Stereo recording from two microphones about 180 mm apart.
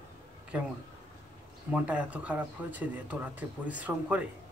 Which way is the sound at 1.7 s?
5° right (ahead or behind).